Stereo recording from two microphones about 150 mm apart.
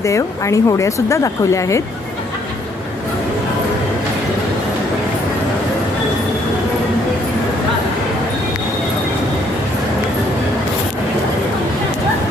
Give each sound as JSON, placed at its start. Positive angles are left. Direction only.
{"t": 0.0, "sound": "speech", "side_deg": 20}